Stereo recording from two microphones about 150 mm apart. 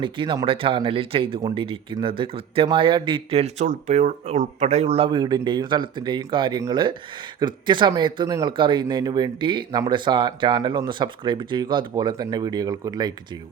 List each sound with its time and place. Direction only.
0.0 s speech: 35° right (ahead or behind)